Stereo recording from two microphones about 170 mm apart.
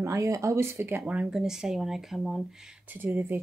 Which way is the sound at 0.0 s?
15° right (ahead or behind).